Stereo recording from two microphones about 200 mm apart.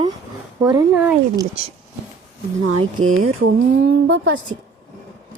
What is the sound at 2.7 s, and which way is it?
Speech, 90° right.